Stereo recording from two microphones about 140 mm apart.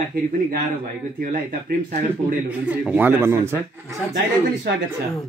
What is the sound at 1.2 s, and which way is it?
Speech, 85° right.